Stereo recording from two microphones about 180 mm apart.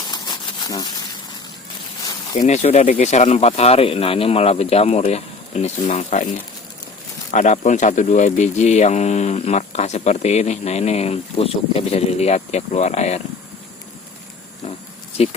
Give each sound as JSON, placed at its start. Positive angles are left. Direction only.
{"t": 0.1, "sound": "a sound", "side_deg": 20}
{"t": 2.4, "sound": "speech", "side_deg": 40}
{"t": 7.3, "sound": "speech", "side_deg": 40}